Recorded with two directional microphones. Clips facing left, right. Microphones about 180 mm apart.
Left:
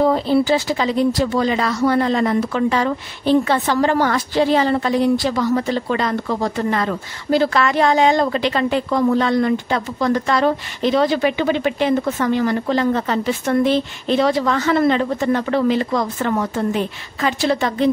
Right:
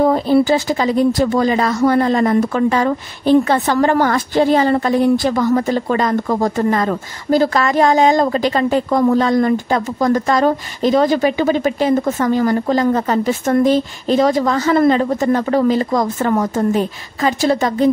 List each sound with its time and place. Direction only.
0.0 s speech: 45° right (ahead or behind)